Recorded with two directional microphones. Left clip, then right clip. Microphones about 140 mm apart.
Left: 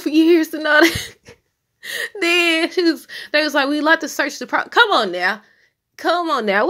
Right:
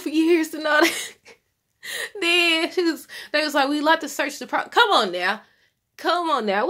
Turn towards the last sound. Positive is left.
turn(degrees=20)  # may be behind; listen again after turning